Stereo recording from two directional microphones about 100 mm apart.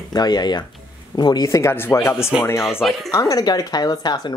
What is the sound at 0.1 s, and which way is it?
Speech, 45° left (ahead or behind).